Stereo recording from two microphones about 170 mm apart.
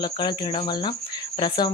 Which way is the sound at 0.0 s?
25° left (ahead or behind).